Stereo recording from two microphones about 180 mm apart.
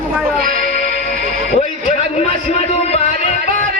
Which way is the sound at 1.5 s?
40° left (ahead or behind).